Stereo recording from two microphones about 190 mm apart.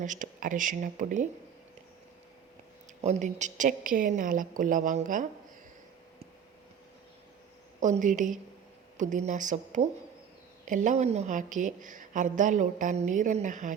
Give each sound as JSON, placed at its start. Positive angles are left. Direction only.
{"t": 0.0, "sound": "a woman's voice", "side_deg": -45}
{"t": 3.0, "sound": "a woman's voice", "side_deg": -40}
{"t": 7.8, "sound": "a woman's voice", "side_deg": -40}